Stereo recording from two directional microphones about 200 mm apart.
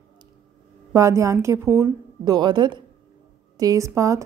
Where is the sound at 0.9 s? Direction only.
15° right (ahead or behind).